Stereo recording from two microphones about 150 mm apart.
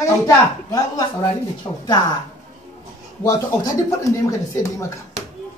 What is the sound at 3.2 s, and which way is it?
Speech, 20° left (ahead or behind).